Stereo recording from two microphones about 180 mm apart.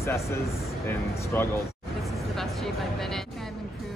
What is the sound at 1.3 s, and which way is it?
Speech, 10° left (ahead or behind).